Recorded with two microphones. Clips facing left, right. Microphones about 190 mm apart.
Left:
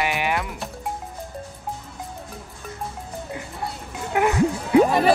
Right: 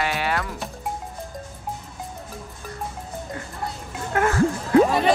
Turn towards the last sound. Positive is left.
turn(degrees=15)  # may be behind; listen again after turning